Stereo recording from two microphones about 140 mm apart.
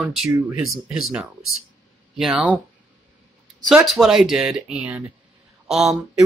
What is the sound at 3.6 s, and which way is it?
Speech, centre (ahead or behind).